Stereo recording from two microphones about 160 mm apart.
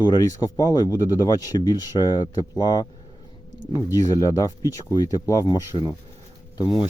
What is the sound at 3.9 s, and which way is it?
Speech, 20° left (ahead or behind).